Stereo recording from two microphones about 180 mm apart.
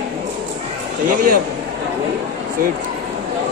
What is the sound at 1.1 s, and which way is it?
Speech, 50° right (ahead or behind).